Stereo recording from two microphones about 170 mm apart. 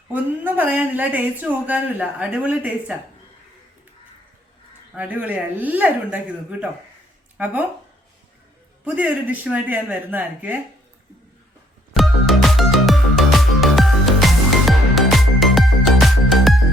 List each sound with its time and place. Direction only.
0.1 s speech: 10° right (ahead or behind)
4.9 s speech: 10° right (ahead or behind)
8.8 s speech: 10° right (ahead or behind)
11.9 s music: centre (ahead or behind)